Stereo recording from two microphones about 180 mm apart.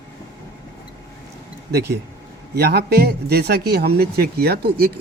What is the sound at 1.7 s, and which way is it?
A man's voice, 65° right (ahead or behind).